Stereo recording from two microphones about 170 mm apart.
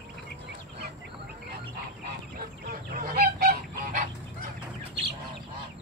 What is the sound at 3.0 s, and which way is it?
Goose, 55° right (ahead or behind).